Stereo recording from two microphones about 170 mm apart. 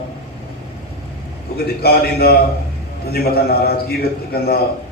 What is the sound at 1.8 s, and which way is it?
Speech, 65° left (ahead or behind).